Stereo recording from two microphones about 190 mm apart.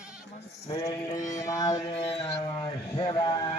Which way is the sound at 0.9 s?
15° left (ahead or behind).